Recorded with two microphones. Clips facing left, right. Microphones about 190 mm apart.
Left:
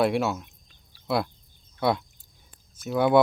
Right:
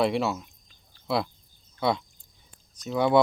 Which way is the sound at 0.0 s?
Centre (ahead or behind).